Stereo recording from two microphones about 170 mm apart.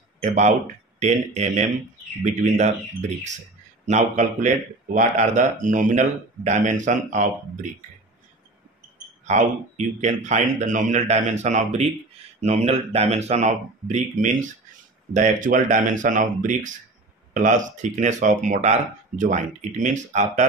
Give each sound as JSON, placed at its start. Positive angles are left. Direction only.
{"t": 0.2, "sound": "speech", "side_deg": -45}
{"t": 9.2, "sound": "speech", "side_deg": -45}